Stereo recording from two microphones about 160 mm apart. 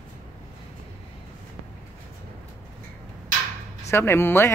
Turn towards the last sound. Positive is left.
turn(degrees=15)  # may be behind; listen again after turning